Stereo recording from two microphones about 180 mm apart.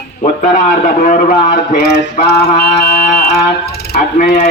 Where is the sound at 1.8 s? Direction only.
65° left (ahead or behind).